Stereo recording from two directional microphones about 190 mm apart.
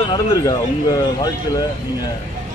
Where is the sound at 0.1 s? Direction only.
20° left (ahead or behind).